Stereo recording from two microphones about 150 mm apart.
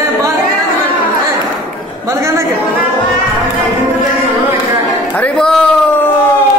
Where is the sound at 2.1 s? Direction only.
20° right (ahead or behind).